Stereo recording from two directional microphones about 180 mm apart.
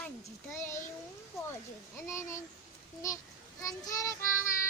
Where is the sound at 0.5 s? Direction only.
15° left (ahead or behind).